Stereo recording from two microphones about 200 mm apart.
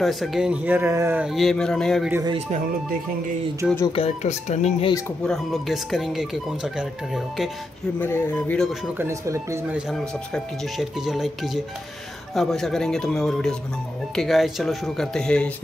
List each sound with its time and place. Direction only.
0.0 s speech: centre (ahead or behind)
3.9 s speech: 30° left (ahead or behind)
5.2 s speech: centre (ahead or behind)
8.9 s speech: 15° right (ahead or behind)
9.8 s speech: centre (ahead or behind)